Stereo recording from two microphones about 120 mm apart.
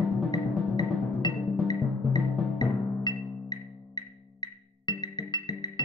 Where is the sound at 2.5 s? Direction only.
35° left (ahead or behind).